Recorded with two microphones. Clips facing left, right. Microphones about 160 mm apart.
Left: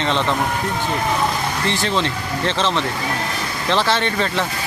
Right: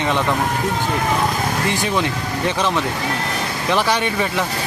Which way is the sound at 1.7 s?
15° right (ahead or behind).